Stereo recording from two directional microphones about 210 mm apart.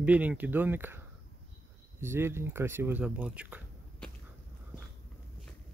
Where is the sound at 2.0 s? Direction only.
10° right (ahead or behind).